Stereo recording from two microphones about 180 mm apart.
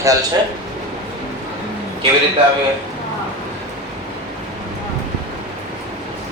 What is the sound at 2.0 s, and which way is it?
Speech, 30° right (ahead or behind).